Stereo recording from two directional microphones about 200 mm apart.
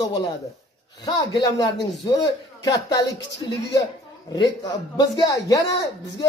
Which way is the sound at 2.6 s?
20° left (ahead or behind).